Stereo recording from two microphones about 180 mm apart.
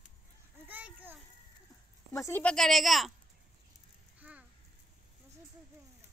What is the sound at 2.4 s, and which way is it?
Speech, 5° left (ahead or behind).